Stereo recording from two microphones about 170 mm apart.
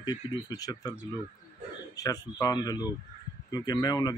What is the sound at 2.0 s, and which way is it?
Speech, 20° left (ahead or behind).